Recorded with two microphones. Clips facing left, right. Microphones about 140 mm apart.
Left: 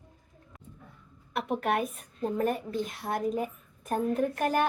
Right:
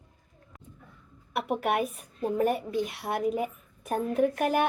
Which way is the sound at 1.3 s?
5° right (ahead or behind).